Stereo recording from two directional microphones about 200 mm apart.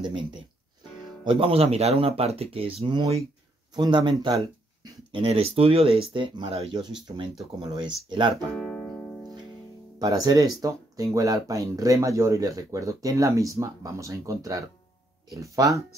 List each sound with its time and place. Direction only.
1.2 s speech: 25° right (ahead or behind)
5.1 s speech: 30° right (ahead or behind)
8.5 s music: 5° left (ahead or behind)
9.9 s speech: 20° right (ahead or behind)